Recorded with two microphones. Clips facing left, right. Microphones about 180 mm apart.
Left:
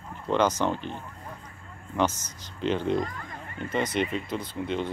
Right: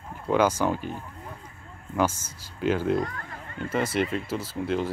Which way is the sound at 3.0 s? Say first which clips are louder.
Right 1 dB; 65° right (ahead or behind).